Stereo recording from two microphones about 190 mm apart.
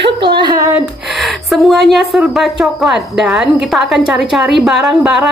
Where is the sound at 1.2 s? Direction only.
Centre (ahead or behind).